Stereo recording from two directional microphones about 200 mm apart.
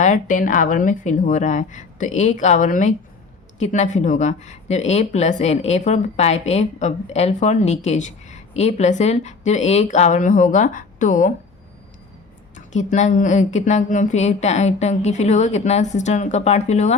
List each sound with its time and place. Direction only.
0.0 s speech: 40° left (ahead or behind)
12.5 s speech: 35° left (ahead or behind)